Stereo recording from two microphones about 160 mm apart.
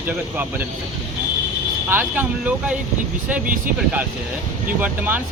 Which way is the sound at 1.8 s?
10° right (ahead or behind).